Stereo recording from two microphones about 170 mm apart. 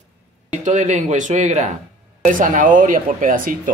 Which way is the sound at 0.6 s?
45° right (ahead or behind).